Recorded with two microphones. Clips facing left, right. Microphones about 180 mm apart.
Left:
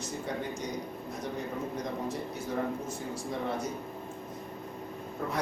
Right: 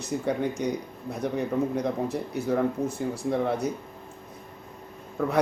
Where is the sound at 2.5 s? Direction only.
65° right (ahead or behind).